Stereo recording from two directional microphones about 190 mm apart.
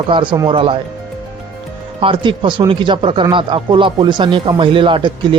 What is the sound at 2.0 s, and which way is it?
Speech, 25° right (ahead or behind).